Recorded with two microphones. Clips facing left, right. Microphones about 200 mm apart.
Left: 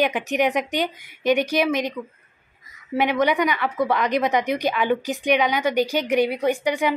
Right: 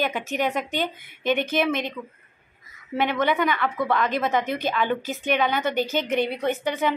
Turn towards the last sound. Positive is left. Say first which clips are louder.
# left 3 dB
turn(degrees=15)  # may be behind; listen again after turning